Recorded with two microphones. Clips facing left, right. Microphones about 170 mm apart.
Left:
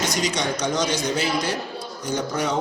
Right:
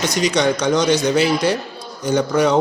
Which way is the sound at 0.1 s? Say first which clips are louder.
Right 7 dB; 70° right (ahead or behind).